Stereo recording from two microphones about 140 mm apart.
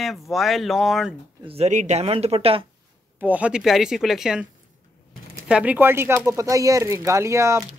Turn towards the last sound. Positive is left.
turn(degrees=-20)  # may be behind; listen again after turning